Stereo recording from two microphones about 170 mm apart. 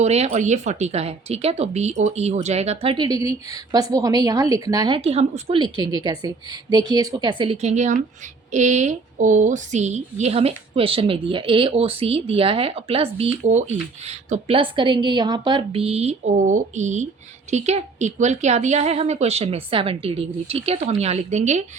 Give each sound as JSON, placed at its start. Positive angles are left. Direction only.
{"t": 0.0, "sound": "a woman's voice", "side_deg": -40}
{"t": 3.1, "sound": "a woman's voice", "side_deg": -20}
{"t": 4.9, "sound": "a woman's voice", "side_deg": -35}